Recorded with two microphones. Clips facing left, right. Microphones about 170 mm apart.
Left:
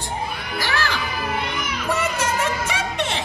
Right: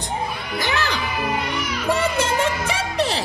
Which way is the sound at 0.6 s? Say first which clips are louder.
Right 1 dB; 20° right (ahead or behind).